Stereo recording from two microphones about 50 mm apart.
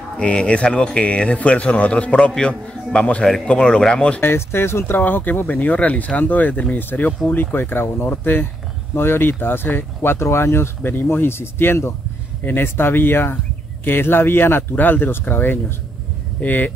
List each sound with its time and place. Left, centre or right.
0.2 s speech: left
4.2 s speech: left
10.8 s speech: left
16.3 s speech: left